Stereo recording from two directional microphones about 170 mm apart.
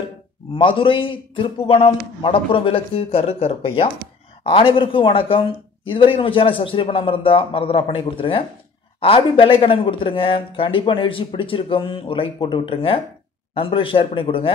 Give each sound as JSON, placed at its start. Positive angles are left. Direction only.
{"t": 0.6, "sound": "speech", "side_deg": 30}